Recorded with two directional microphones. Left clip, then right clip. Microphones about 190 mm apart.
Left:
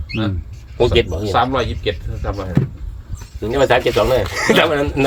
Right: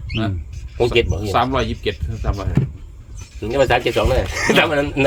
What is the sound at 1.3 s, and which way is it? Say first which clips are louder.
Speech: left 2 dB; 60° right (ahead or behind).